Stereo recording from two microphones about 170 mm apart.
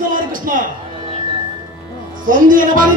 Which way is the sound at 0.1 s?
50° right (ahead or behind).